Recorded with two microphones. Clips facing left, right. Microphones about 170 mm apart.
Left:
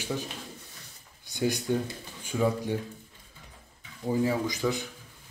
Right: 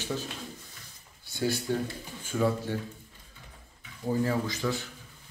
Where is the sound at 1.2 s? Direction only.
15° left (ahead or behind).